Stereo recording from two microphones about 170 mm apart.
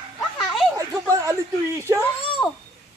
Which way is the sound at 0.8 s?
20° right (ahead or behind).